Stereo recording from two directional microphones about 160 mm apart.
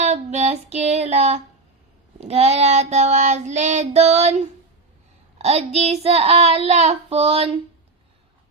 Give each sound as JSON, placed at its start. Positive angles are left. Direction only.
{"t": 0.0, "sound": "child singing", "side_deg": -45}
{"t": 5.4, "sound": "child singing", "side_deg": -40}